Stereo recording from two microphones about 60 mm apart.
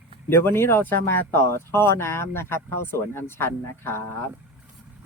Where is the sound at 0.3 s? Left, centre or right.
Left.